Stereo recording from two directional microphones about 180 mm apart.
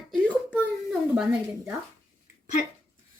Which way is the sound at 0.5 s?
5° right (ahead or behind).